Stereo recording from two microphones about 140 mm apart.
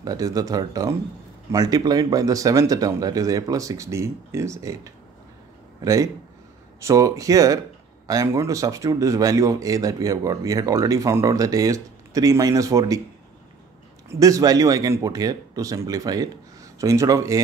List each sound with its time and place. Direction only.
0.0 s speech: 25° right (ahead or behind)
14.0 s speech: 25° right (ahead or behind)